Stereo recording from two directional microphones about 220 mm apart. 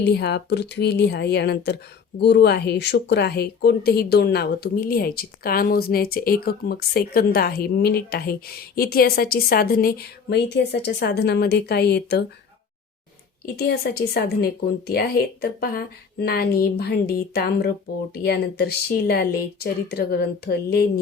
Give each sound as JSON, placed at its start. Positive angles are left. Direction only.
{"t": 0.0, "sound": "speech", "side_deg": 50}
{"t": 13.4, "sound": "speech", "side_deg": 45}